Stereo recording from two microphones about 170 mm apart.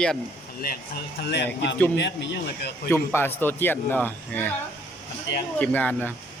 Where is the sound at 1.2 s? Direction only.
85° left.